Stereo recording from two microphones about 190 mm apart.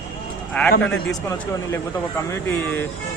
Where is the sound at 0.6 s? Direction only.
10° left (ahead or behind).